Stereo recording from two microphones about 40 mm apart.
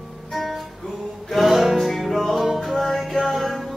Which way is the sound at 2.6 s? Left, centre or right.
Centre.